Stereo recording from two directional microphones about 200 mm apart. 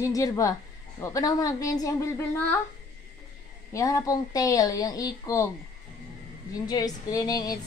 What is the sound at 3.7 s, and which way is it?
A woman's voice, 15° left (ahead or behind).